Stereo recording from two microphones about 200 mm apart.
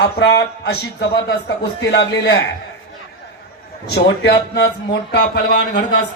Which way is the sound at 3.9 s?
55° left (ahead or behind).